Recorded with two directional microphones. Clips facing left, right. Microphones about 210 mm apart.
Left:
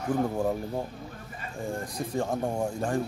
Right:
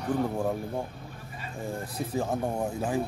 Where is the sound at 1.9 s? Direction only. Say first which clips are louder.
Right 1 dB; 5° right (ahead or behind).